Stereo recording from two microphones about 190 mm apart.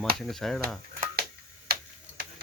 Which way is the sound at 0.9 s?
50° right (ahead or behind).